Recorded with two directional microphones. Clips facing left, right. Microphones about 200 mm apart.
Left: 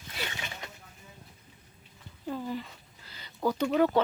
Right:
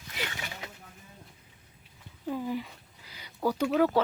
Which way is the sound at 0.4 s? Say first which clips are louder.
Even; 20° left (ahead or behind).